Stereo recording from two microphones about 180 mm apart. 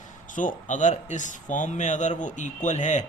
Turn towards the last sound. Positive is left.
turn(degrees=40)  # may be behind; listen again after turning